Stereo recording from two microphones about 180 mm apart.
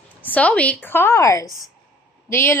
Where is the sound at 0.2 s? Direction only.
10° left (ahead or behind).